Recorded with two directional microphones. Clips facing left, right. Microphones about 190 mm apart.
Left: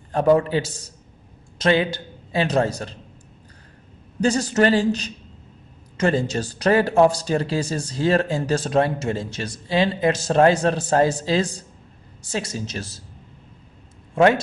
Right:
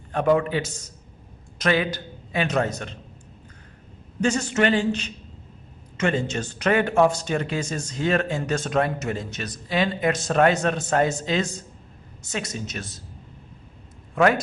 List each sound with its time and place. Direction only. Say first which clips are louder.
0.1 s speech: left 3 dB; 35° left (ahead or behind)
4.2 s speech: left 3 dB; 35° left (ahead or behind)
14.1 s speech: left 3 dB; 25° left (ahead or behind)